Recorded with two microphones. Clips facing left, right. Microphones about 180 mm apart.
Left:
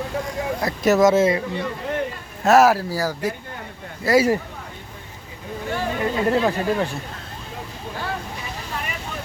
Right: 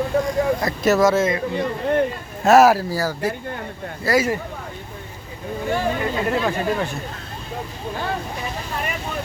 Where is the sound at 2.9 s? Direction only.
15° left (ahead or behind).